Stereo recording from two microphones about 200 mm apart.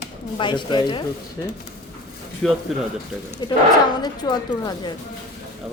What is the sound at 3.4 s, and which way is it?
A woman's voice, 20° left (ahead or behind).